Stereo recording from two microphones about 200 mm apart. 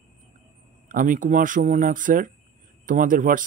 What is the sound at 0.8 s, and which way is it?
Speech, 40° right (ahead or behind).